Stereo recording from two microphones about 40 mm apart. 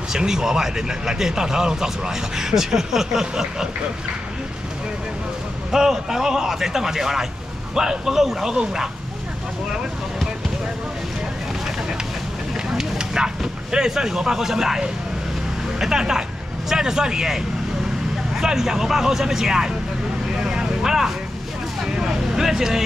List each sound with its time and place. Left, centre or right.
0.1 s speech: centre
5.7 s speech: centre
12.7 s fire: centre
13.7 s speech: centre
15.8 s speech: centre
20.3 s vehicle: centre